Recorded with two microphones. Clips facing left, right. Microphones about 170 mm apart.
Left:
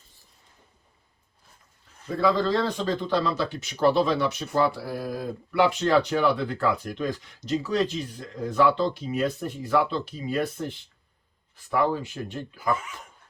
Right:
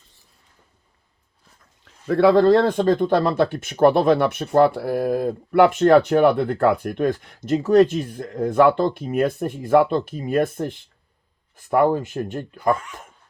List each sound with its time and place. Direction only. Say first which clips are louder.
2.0 s speech: right 9 dB; 70° right (ahead or behind); by 12.5 s 50° right (ahead or behind)
12.7 s speech: right 3 dB; centre (ahead or behind)